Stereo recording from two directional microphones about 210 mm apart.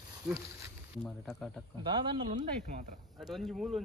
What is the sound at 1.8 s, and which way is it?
Speech, 25° right (ahead or behind).